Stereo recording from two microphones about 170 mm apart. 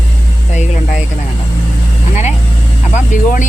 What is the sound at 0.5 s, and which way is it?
Speech, 45° left (ahead or behind).